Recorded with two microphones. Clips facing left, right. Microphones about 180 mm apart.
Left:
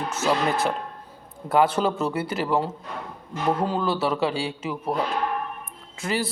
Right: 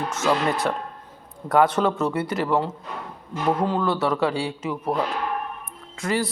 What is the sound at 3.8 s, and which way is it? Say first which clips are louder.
Speech: right 1 dB; 30° left (ahead or behind).